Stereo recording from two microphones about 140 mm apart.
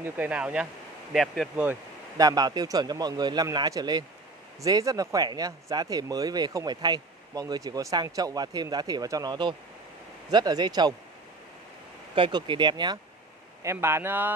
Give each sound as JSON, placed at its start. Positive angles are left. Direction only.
{"t": 0.0, "sound": "speech", "side_deg": -10}
{"t": 1.1, "sound": "speech", "side_deg": 0}
{"t": 2.1, "sound": "speech", "side_deg": -25}
{"t": 12.2, "sound": "speech", "side_deg": -35}
{"t": 13.6, "sound": "speech", "side_deg": -20}